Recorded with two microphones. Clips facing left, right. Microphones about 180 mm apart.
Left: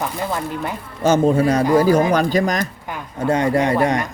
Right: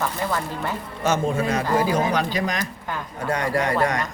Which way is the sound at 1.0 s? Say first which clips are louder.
Left 7 dB; 35° left (ahead or behind).